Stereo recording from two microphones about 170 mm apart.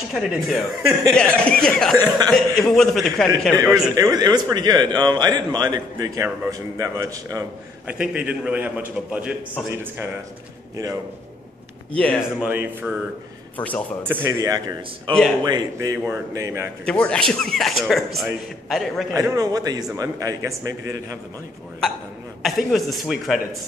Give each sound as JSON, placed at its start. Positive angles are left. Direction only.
{"t": 0.1, "sound": "a man's voice", "side_deg": 0}
{"t": 2.0, "sound": "speech", "side_deg": -20}
{"t": 2.3, "sound": "a man's voice", "side_deg": 0}
{"t": 3.9, "sound": "a man's voice", "side_deg": -20}
{"t": 7.8, "sound": "a man's voice", "side_deg": -5}
{"t": 12.0, "sound": "speech", "side_deg": 5}
{"t": 12.4, "sound": "a man's voice", "side_deg": -10}
{"t": 13.6, "sound": "speech", "side_deg": 10}
{"t": 14.0, "sound": "speech", "side_deg": -15}
{"t": 16.8, "sound": "a man's voice", "side_deg": 5}
{"t": 19.1, "sound": "speech", "side_deg": -20}
{"t": 22.4, "sound": "a man's voice", "side_deg": 0}